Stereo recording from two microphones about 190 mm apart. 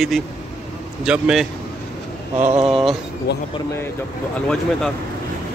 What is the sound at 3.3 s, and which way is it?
Speech, 60° left (ahead or behind).